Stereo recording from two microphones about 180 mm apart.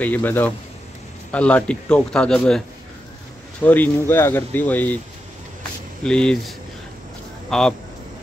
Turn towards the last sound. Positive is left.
turn(degrees=5)  # may be behind; listen again after turning